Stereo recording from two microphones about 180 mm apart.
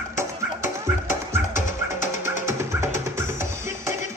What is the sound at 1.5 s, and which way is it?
Music, 45° left (ahead or behind).